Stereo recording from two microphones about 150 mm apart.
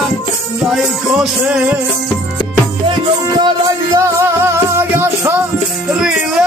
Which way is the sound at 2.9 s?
30° right (ahead or behind).